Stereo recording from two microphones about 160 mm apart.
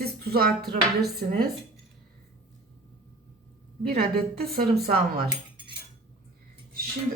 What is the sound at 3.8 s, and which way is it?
Speech, 75° right (ahead or behind).